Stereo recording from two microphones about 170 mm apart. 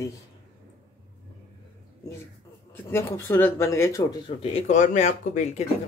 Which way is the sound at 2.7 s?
15° left (ahead or behind).